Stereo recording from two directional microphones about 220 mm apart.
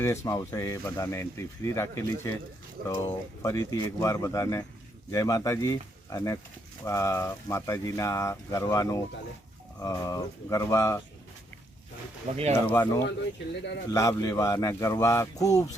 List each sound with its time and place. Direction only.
0.0 s speech: 15° left (ahead or behind)
12.3 s speech: 35° right (ahead or behind)
12.6 s speech: 10° left (ahead or behind)